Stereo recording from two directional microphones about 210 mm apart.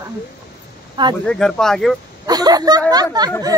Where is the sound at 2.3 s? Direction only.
20° right (ahead or behind).